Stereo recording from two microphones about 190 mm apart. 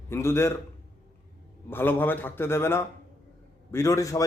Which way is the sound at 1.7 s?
10° left (ahead or behind).